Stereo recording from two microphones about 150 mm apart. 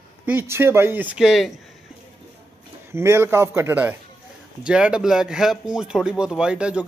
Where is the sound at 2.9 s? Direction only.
15° right (ahead or behind).